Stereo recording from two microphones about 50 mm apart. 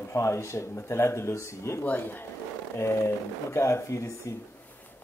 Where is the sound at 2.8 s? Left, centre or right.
Left.